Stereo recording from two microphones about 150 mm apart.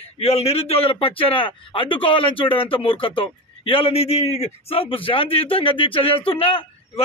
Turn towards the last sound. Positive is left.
turn(degrees=35)  # may be behind; listen again after turning